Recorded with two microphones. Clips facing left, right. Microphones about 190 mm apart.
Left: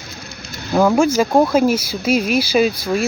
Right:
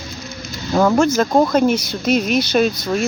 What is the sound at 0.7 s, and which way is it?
Speech, 5° left (ahead or behind).